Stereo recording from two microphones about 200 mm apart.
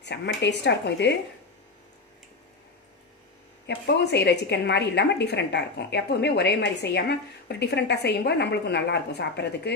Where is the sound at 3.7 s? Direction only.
55° left (ahead or behind).